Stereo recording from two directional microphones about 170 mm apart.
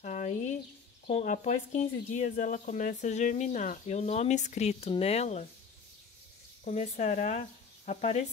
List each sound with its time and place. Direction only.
0.0 s a sound: 45° left (ahead or behind)
1.0 s speech: 45° left (ahead or behind)
6.6 s speech: 40° left (ahead or behind)